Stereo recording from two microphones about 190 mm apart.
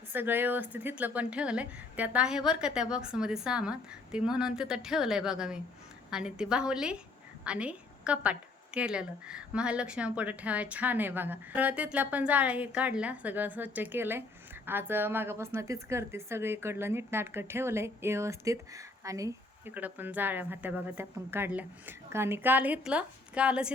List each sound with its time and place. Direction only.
0.1 s a woman's voice: 10° right (ahead or behind)